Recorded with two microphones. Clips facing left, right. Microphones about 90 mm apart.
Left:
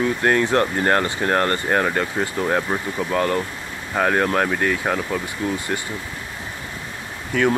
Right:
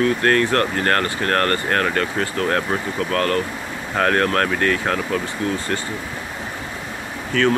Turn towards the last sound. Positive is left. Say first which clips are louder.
# right 1 dB
turn(degrees=15)  # may be behind; listen again after turning